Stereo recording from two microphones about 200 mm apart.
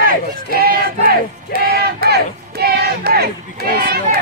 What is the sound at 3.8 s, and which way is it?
Run, 50° right (ahead or behind).